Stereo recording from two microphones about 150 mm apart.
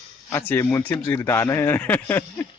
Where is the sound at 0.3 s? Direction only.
15° left (ahead or behind).